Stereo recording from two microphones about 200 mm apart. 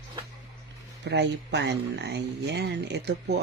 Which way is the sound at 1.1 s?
60° right (ahead or behind).